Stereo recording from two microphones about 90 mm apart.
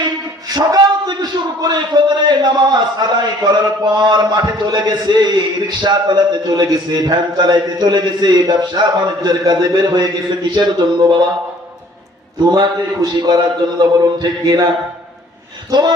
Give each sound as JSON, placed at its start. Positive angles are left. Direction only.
{"t": 0.5, "sound": "a man's voice", "side_deg": -50}
{"t": 12.5, "sound": "a man's voice", "side_deg": -50}